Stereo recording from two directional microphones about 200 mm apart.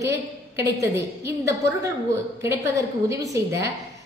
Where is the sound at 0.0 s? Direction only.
15° right (ahead or behind).